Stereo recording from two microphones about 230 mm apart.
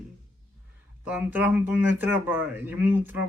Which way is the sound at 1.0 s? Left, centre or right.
Centre.